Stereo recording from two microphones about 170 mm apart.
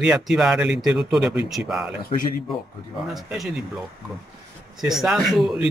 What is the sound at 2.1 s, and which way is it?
Speech, 35° left (ahead or behind).